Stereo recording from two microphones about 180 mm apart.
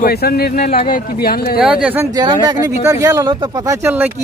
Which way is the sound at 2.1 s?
25° right (ahead or behind).